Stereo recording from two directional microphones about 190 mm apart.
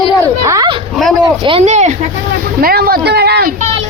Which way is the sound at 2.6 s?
55° right (ahead or behind).